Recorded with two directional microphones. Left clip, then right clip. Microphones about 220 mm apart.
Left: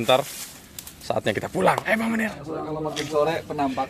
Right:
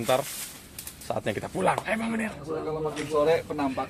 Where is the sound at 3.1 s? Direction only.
45° left (ahead or behind).